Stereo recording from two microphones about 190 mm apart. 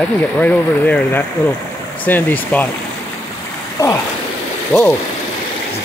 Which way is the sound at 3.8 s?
15° left (ahead or behind).